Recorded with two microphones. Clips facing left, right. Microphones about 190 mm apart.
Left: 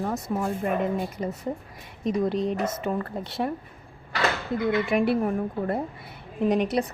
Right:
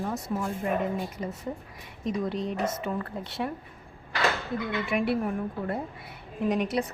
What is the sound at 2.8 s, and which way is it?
Speech, 40° left (ahead or behind).